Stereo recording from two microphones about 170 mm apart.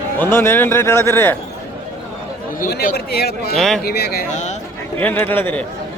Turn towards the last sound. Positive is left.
turn(degrees=10)  # may be behind; listen again after turning